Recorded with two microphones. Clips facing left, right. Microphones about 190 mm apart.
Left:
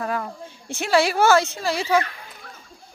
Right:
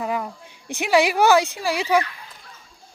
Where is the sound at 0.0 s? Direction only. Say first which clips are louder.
Right 1 dB; 15° right (ahead or behind).